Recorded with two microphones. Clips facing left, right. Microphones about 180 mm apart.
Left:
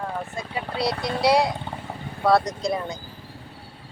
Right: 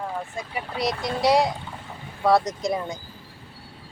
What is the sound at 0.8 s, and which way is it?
Speech, 15° right (ahead or behind).